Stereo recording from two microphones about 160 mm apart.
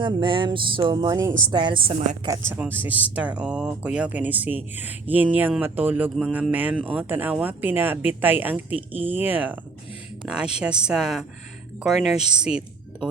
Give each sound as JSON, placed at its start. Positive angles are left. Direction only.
{"t": 0.0, "sound": "a sound", "side_deg": -30}
{"t": 1.5, "sound": "a woman's voice", "side_deg": -30}
{"t": 2.2, "sound": "a woman's voice", "side_deg": -15}